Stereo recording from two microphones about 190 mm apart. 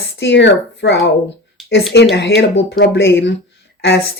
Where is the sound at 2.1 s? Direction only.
65° left (ahead or behind).